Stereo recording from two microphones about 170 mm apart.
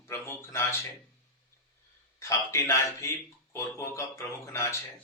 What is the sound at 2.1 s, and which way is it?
A man's voice, 15° left (ahead or behind).